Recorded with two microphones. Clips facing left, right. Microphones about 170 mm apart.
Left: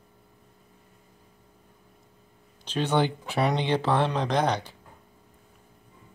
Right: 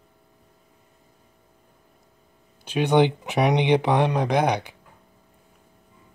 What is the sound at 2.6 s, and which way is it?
Speech, 10° right (ahead or behind).